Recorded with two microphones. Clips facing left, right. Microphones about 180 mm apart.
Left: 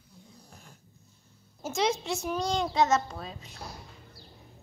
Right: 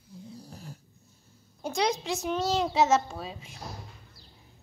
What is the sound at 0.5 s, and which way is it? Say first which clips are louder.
Snoring: right 8 dB; 35° right (ahead or behind).